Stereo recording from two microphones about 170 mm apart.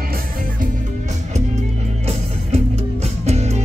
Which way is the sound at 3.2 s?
40° right (ahead or behind).